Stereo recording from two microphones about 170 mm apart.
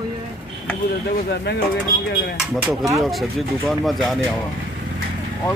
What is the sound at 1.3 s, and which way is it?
Speech, 75° left (ahead or behind).